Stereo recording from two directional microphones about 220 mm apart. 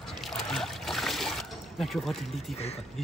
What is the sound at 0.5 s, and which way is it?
Trickle, centre (ahead or behind).